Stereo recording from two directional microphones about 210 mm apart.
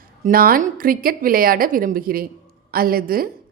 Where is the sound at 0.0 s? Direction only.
45° right (ahead or behind).